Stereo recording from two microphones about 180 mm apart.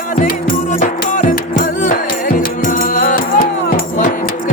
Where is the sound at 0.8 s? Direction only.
45° left (ahead or behind).